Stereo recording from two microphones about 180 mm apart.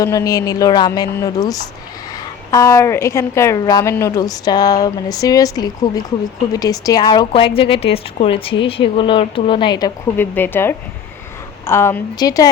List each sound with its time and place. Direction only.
0.0 s a woman's voice: 20° left (ahead or behind)
10.2 s a woman's voice: 10° left (ahead or behind)